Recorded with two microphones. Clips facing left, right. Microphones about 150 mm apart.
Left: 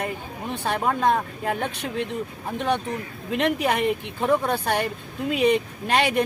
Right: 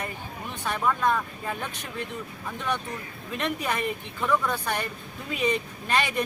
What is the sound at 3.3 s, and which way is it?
Speech, 80° left.